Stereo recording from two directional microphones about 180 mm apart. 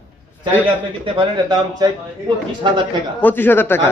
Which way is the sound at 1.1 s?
25° right (ahead or behind).